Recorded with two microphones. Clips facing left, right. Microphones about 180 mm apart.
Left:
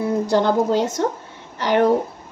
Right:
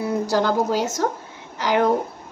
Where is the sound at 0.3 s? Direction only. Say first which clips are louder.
Left 3 dB; 25° left (ahead or behind).